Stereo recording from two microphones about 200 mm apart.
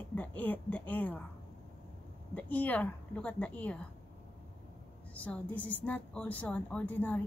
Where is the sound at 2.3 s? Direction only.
10° left (ahead or behind).